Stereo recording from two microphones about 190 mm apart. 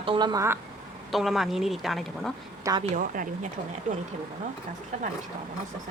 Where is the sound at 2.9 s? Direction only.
45° right (ahead or behind).